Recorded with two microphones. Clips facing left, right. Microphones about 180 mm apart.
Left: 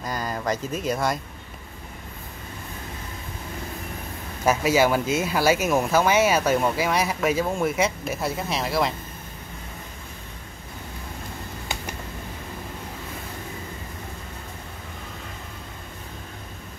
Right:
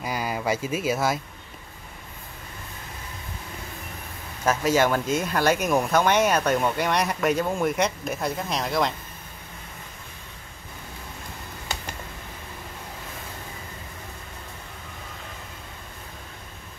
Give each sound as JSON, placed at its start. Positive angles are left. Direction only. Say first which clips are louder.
{"t": 0.0, "sound": "speech", "louder": "right 1 dB", "side_deg": -10}
{"t": 4.5, "sound": "speech", "louder": "left 1 dB", "side_deg": 10}